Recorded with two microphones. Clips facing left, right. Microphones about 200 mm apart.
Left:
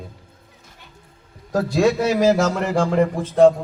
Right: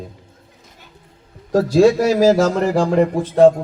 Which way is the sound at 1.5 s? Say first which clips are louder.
Right 5 dB; 35° right (ahead or behind).